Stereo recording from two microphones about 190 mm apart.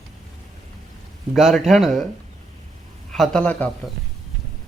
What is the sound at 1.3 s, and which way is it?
Speech, centre (ahead or behind).